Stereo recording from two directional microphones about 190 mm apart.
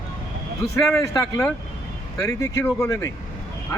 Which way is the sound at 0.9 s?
15° left (ahead or behind).